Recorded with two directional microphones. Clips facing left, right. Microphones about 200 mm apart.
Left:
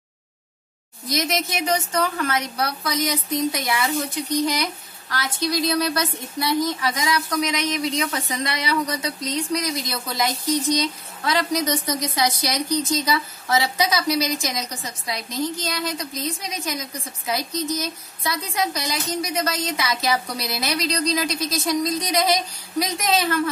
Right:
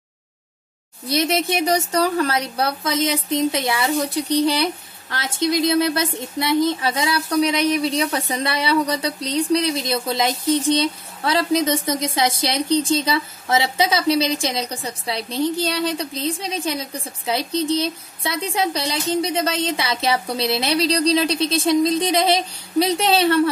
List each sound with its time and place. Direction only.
1.0 s speech: 30° right (ahead or behind)